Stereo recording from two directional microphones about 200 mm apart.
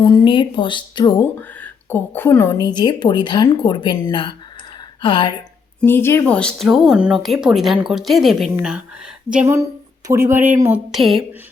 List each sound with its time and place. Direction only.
0.0 s a woman's voice: 20° left (ahead or behind)
1.4 s a woman's voice: 10° left (ahead or behind)
5.8 s speech: 10° left (ahead or behind)